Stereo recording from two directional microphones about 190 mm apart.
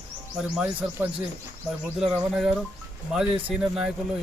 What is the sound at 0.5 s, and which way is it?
Speech, 10° right (ahead or behind).